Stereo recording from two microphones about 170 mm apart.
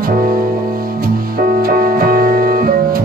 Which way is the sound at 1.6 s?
60° right (ahead or behind).